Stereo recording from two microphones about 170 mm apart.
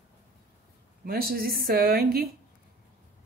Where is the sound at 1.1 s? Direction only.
60° right (ahead or behind).